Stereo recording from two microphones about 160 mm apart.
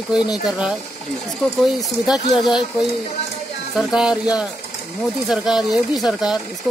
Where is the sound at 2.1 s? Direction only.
25° left (ahead or behind).